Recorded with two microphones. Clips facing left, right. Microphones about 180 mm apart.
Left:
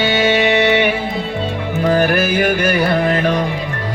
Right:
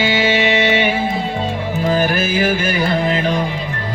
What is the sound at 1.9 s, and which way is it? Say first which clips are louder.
Music: left 3 dB; 60° left (ahead or behind).